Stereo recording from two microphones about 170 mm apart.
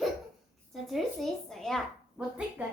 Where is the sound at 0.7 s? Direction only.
Centre (ahead or behind).